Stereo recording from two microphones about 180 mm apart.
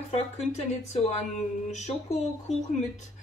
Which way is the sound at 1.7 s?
40° left (ahead or behind).